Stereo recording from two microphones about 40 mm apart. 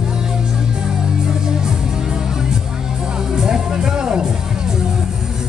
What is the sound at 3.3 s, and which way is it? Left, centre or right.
Music, centre.